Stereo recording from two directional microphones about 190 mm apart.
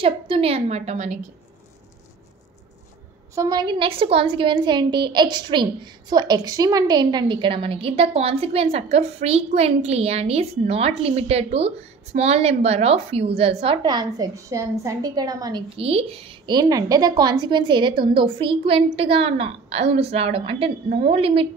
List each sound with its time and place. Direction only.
0.0 s a woman's voice: 30° right (ahead or behind)
3.3 s a woman's voice: 20° right (ahead or behind)